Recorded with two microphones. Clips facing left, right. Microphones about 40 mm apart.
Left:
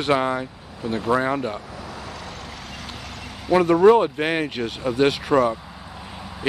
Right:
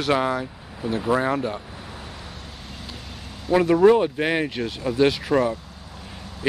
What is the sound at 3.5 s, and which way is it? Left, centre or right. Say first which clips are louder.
Speech: left 1 dB; left.